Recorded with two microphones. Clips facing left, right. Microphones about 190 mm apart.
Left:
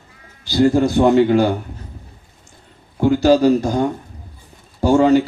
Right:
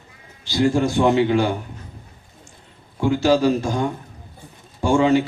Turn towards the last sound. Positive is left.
turn(degrees=40)  # may be behind; listen again after turning